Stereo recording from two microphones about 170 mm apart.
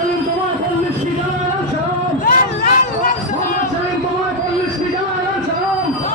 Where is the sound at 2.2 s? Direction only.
55° left (ahead or behind).